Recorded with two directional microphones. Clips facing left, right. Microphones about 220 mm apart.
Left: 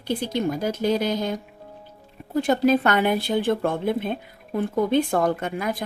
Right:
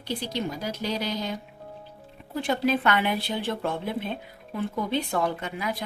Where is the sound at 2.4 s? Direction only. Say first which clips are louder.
Left 5 dB; 45° left (ahead or behind).